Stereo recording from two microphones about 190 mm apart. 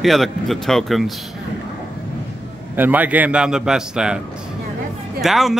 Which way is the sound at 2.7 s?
10° right (ahead or behind).